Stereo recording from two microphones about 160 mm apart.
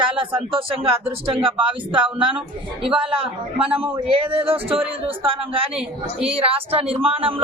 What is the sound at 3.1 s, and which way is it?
Speech, 35° right (ahead or behind).